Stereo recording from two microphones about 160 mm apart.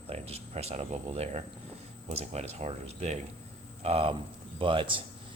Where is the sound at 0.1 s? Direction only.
40° right (ahead or behind).